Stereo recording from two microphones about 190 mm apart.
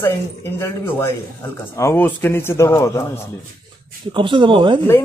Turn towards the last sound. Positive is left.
turn(degrees=-25)  # may be behind; listen again after turning